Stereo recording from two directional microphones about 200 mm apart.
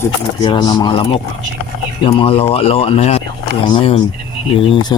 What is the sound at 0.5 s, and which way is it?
Speech, 20° left (ahead or behind).